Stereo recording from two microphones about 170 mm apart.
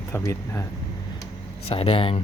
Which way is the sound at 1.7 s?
35° left (ahead or behind).